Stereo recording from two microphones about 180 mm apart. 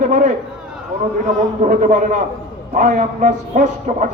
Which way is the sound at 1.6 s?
45° right (ahead or behind).